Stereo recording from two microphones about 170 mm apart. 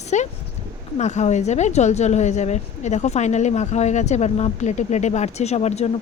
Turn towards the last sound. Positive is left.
turn(degrees=40)  # may be behind; listen again after turning